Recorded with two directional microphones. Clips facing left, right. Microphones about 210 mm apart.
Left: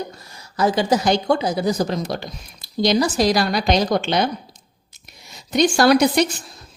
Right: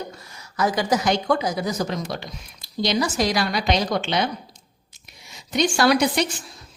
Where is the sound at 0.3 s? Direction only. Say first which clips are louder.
Left 4 dB; 30° left (ahead or behind).